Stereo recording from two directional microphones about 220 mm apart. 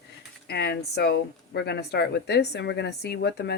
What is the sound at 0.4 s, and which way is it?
Speech, 45° left (ahead or behind).